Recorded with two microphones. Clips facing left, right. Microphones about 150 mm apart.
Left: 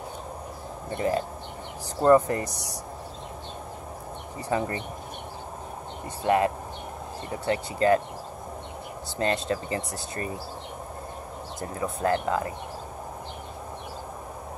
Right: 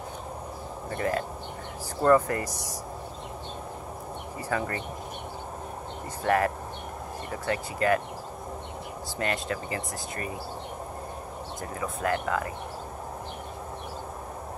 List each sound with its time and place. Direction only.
0.8 s speech: 20° left (ahead or behind)
4.5 s speech: 25° left (ahead or behind)
6.2 s speech: 20° left (ahead or behind)
9.2 s speech: 30° left (ahead or behind)
11.8 s speech: 30° left (ahead or behind)